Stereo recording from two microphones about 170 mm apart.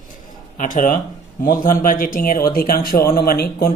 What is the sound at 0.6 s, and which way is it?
Speech, 50° left (ahead or behind).